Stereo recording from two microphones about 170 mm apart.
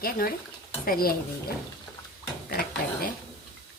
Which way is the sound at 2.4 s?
60° left (ahead or behind).